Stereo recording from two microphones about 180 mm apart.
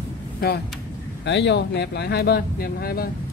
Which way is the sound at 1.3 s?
75° left (ahead or behind).